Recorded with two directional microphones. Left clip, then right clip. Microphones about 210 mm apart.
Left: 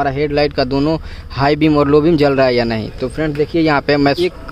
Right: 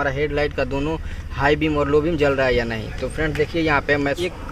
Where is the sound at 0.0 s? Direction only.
55° left (ahead or behind).